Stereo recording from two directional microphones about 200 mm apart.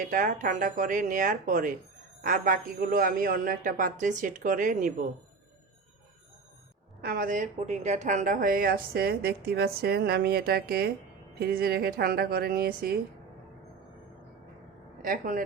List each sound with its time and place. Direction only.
0.1 s a woman's voice: 40° right (ahead or behind)
7.0 s a woman's voice: 45° right (ahead or behind)
15.0 s a woman's voice: 45° right (ahead or behind)